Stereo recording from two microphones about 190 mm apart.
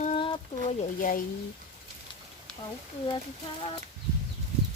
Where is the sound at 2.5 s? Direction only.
5° left (ahead or behind).